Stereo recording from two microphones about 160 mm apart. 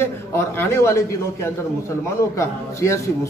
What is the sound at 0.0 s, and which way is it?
A man's voice, 15° left (ahead or behind).